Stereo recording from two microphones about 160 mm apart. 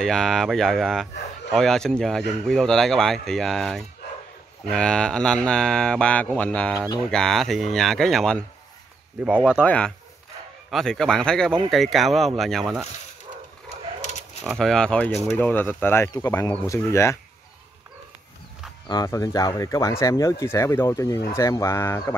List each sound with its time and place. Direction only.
0.0 s speech: centre (ahead or behind)
9.6 s speech: 5° left (ahead or behind)
14.6 s speech: 5° left (ahead or behind)
18.9 s speech: 20° left (ahead or behind)